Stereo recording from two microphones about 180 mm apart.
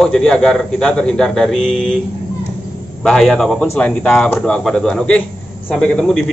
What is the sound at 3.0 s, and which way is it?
A man's voice, centre (ahead or behind).